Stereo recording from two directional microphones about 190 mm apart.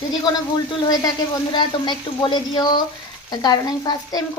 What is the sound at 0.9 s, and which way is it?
A woman's voice, 20° left (ahead or behind).